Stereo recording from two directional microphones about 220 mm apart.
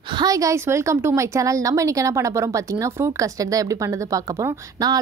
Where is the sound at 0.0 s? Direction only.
20° right (ahead or behind).